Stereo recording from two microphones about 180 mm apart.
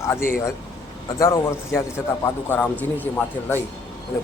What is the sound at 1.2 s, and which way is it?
Speech, 15° left (ahead or behind).